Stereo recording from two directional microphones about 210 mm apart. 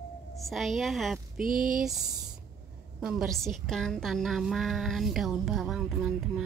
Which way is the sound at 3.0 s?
Centre (ahead or behind).